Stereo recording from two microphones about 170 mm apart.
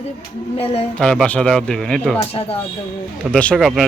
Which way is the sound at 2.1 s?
35° left (ahead or behind).